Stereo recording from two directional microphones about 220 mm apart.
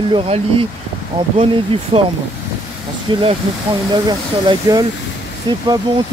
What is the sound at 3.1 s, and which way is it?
Speech, 25° right (ahead or behind).